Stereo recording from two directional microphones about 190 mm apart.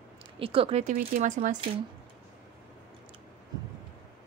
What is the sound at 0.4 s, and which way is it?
Speech, 30° right (ahead or behind).